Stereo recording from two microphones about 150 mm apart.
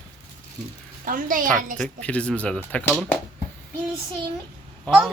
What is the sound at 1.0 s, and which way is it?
Speech, 65° right (ahead or behind).